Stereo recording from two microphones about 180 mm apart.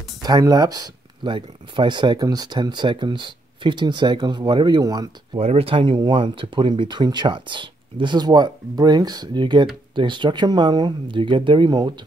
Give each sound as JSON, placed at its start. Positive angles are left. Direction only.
{"t": 0.2, "sound": "speech", "side_deg": -20}
{"t": 5.4, "sound": "speech", "side_deg": -35}